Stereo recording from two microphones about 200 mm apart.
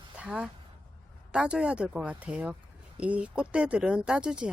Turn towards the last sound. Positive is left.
turn(degrees=-5)  # may be behind; listen again after turning